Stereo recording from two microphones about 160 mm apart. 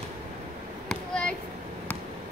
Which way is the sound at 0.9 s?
5° left (ahead or behind).